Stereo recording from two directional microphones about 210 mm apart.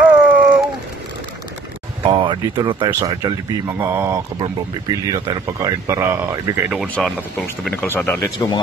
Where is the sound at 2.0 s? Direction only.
20° right (ahead or behind); by 7.1 s 5° right (ahead or behind).